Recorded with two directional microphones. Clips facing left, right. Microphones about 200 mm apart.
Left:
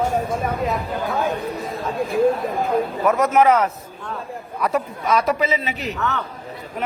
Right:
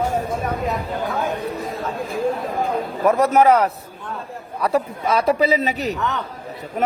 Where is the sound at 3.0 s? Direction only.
35° right (ahead or behind).